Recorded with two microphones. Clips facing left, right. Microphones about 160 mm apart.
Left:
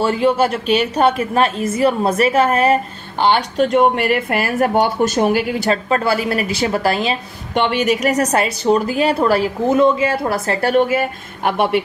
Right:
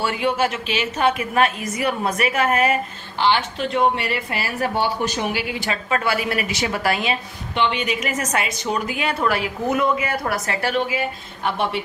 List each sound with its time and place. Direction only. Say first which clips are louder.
0.0 s a woman's voice: left 6 dB; 35° left (ahead or behind)
3.2 s speech: left 5 dB; 45° left (ahead or behind)
7.5 s a woman's voice: left 6 dB; 45° left (ahead or behind); by 10.6 s 30° left (ahead or behind)
10.7 s speech: left 9 dB; 50° left (ahead or behind)